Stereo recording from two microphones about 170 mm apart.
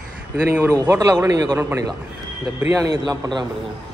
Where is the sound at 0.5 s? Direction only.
15° right (ahead or behind).